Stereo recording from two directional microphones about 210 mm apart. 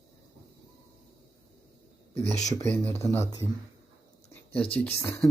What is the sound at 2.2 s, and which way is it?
Speech, 35° left (ahead or behind).